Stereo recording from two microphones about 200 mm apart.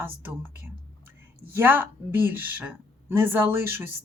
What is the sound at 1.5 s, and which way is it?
Speech, 10° right (ahead or behind).